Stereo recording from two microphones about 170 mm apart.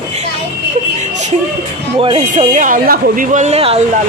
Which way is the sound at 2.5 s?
50° right (ahead or behind).